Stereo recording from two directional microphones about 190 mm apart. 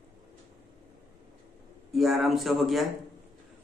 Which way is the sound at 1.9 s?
Centre (ahead or behind).